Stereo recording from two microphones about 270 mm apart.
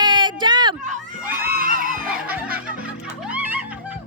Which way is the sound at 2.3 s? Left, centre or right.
Centre.